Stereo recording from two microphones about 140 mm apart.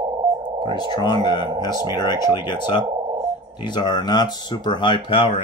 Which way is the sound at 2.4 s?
30° left (ahead or behind).